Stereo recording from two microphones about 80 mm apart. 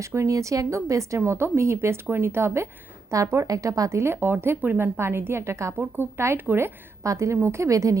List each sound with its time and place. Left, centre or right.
0.0 s speech: right
7.0 s speech: right